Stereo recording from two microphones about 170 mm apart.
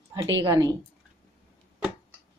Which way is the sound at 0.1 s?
20° right (ahead or behind).